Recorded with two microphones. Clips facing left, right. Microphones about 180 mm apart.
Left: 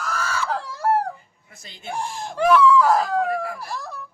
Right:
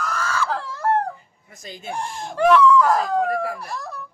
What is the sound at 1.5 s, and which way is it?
Chicken, 45° right (ahead or behind).